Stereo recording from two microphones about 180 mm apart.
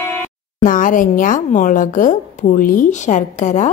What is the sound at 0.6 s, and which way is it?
A woman's voice, 45° left (ahead or behind).